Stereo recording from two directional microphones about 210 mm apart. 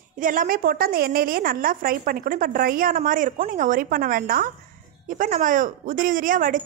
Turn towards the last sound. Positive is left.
turn(degrees=-40)  # may be behind; listen again after turning